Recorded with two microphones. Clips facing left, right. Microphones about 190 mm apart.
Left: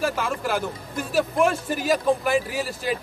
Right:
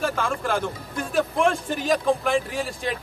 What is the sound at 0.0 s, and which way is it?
A man's voice, 5° left (ahead or behind).